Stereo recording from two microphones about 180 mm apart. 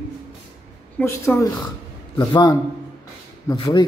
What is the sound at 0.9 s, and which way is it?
A woman's voice, 15° left (ahead or behind).